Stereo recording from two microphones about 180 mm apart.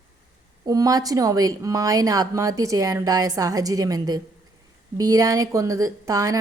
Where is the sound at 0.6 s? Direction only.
20° right (ahead or behind).